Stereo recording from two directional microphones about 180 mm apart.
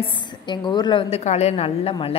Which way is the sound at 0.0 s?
25° left (ahead or behind).